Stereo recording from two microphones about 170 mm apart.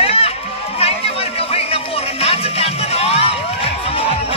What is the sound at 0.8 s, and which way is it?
Music, 35° left (ahead or behind).